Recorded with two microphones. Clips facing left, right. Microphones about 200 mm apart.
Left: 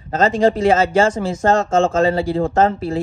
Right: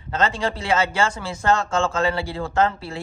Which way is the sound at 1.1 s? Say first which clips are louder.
Left 5 dB; 40° left (ahead or behind).